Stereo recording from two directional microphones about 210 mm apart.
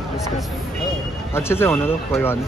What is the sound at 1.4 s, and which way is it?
Speech, 10° left (ahead or behind).